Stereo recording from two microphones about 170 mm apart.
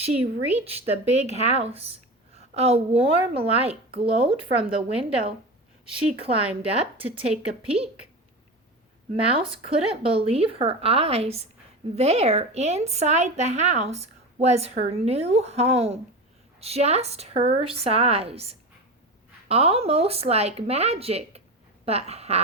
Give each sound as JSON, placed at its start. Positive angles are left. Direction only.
{"t": 0.5, "sound": "a woman's voice", "side_deg": -40}
{"t": 9.3, "sound": "a woman's voice", "side_deg": -35}